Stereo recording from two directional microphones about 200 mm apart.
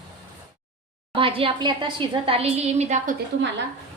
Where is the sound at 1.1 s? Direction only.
25° right (ahead or behind).